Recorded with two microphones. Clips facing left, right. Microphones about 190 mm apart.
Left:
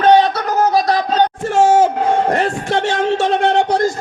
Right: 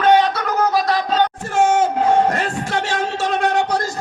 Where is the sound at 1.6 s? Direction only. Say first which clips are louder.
Left 4 dB; 30° left (ahead or behind).